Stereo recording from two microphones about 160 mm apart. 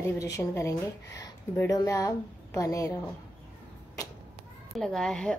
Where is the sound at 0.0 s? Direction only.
20° left (ahead or behind).